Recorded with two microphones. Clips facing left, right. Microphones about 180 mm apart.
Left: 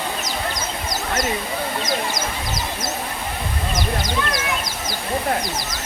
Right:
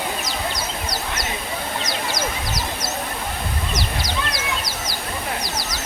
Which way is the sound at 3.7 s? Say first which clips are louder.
Left 6 dB; 50° left (ahead or behind).